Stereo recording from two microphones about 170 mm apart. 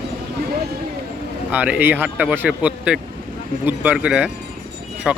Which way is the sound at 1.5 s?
10° right (ahead or behind).